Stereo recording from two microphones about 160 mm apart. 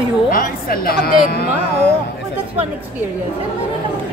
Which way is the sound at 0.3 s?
65° left (ahead or behind).